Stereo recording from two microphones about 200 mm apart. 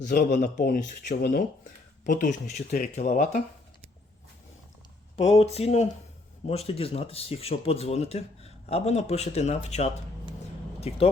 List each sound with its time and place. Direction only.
0.0 s speech: 40° left (ahead or behind)
5.3 s speech: 30° left (ahead or behind)